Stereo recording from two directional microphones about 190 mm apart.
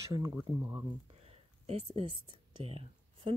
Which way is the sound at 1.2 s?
30° right (ahead or behind).